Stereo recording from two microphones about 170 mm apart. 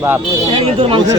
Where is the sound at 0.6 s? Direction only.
35° right (ahead or behind).